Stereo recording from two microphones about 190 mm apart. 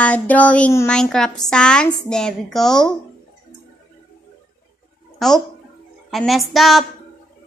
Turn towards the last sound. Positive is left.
turn(degrees=0)  # may be behind; listen again after turning